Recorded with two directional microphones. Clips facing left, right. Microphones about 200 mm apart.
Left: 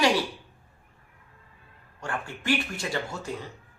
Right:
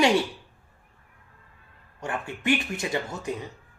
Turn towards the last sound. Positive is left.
turn(degrees=-20)  # may be behind; listen again after turning